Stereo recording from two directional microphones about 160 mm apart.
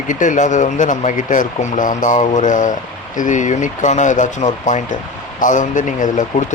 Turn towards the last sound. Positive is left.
turn(degrees=50)  # may be behind; listen again after turning